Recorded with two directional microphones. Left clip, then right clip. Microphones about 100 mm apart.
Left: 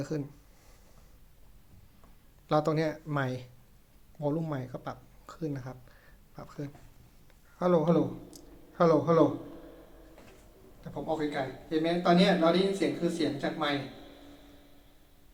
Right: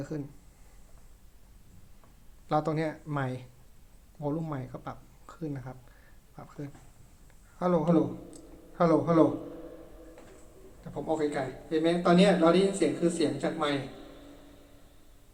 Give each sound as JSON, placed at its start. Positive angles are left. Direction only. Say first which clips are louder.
{"t": 0.0, "sound": "speech", "louder": "left 2 dB", "side_deg": 20}
{"t": 2.5, "sound": "a man's voice", "louder": "left 1 dB", "side_deg": 15}
{"t": 10.8, "sound": "a man's voice", "louder": "right 2 dB", "side_deg": 0}